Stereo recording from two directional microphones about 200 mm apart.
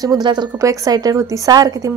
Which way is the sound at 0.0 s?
20° right (ahead or behind).